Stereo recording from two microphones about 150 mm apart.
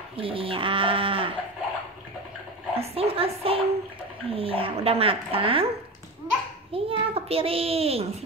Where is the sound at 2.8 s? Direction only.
40° right (ahead or behind).